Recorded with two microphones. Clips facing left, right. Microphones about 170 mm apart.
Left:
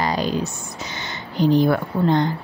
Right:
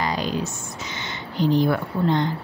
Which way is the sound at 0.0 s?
35° left (ahead or behind).